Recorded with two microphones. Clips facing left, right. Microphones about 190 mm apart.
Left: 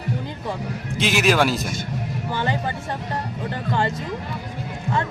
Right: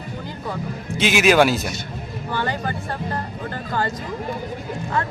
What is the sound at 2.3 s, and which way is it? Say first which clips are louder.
Speech: right 1 dB; 20° left (ahead or behind).